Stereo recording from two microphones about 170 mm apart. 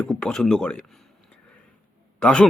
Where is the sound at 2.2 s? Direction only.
5° left (ahead or behind).